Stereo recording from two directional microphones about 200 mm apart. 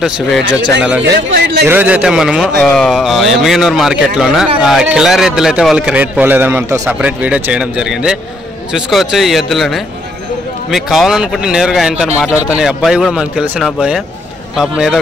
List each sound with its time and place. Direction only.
0.0 s a man's voice: 5° right (ahead or behind)
1.0 s speech: 60° right (ahead or behind)
1.7 s a man's voice: 10° right (ahead or behind)